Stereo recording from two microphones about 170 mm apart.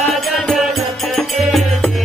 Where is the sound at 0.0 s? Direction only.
Centre (ahead or behind).